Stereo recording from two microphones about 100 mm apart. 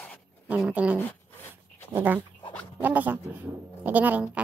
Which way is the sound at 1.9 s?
20° right (ahead or behind).